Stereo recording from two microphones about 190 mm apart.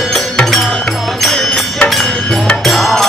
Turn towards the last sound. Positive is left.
turn(degrees=0)  # may be behind; listen again after turning